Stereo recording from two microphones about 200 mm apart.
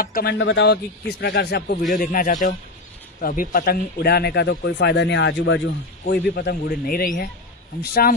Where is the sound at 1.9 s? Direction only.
45° left (ahead or behind).